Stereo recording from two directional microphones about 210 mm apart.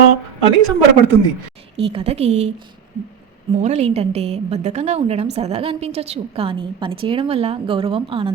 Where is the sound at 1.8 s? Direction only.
25° right (ahead or behind).